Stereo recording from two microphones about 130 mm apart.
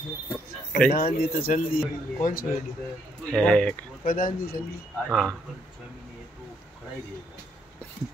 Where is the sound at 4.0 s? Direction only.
90° left.